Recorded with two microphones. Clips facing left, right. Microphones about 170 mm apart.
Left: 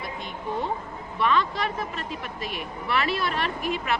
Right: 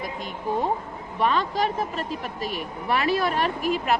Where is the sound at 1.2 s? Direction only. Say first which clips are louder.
Right 1 dB; 40° right (ahead or behind).